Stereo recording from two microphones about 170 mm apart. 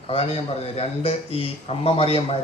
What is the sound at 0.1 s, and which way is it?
A woman's voice, 35° left (ahead or behind).